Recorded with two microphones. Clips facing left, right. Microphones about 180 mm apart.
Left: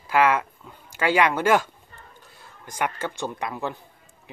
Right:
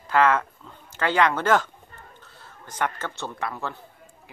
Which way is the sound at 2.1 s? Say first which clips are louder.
Right 1 dB; 15° left (ahead or behind).